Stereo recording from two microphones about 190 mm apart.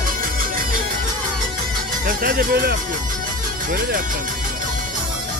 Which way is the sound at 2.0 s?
50° right (ahead or behind).